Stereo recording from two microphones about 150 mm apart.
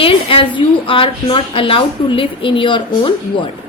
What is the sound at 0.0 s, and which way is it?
A woman's voice, 35° left (ahead or behind).